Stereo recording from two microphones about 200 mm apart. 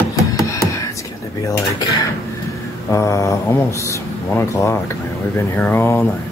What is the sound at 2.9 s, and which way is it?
Speech, 15° left (ahead or behind).